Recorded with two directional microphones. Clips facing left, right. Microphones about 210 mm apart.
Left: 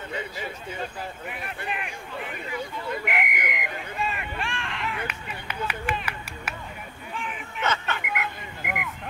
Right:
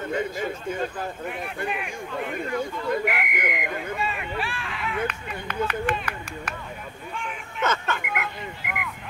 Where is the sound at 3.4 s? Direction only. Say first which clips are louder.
Right 4 dB; 50° right (ahead or behind).